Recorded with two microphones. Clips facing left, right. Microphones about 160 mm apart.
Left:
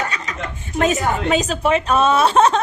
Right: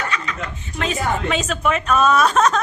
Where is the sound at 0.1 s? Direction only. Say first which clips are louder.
Right 1 dB; 40° left (ahead or behind).